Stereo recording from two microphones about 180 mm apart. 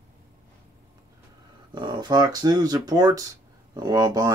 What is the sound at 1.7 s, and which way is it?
Speech, 25° right (ahead or behind).